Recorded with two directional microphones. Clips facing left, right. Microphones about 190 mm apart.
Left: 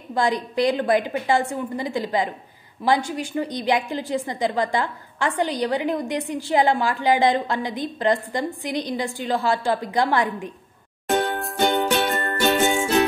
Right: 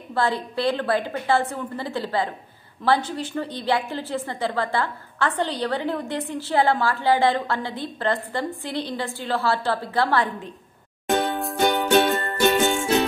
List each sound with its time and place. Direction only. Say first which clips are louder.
0.1 s a woman's voice: left 2 dB; 15° left (ahead or behind)
12.1 s music: right 1 dB; centre (ahead or behind)